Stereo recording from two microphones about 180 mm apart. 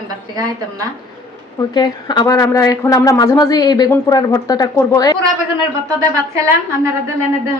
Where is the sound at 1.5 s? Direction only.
20° left (ahead or behind).